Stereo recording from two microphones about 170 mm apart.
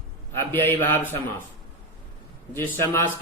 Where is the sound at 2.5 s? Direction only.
15° left (ahead or behind).